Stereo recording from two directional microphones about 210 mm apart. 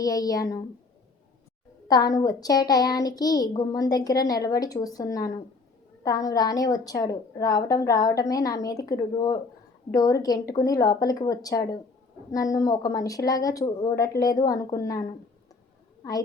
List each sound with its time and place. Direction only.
0.0 s a child's voice: 15° left (ahead or behind)
1.9 s a child's voice: 20° left (ahead or behind)